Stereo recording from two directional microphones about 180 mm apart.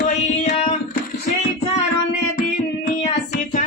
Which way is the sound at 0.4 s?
40° left (ahead or behind).